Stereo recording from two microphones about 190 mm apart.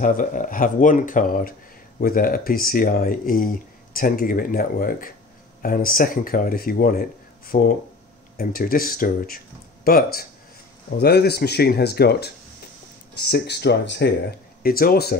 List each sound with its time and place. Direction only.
0.0 s speech: 45° left (ahead or behind); by 14.1 s 60° left (ahead or behind)
14.6 s speech: 50° left (ahead or behind)